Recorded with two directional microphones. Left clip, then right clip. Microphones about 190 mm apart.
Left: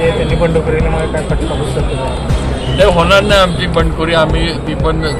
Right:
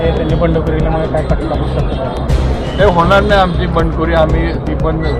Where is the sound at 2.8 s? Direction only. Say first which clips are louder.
Left 1 dB; 30° left (ahead or behind).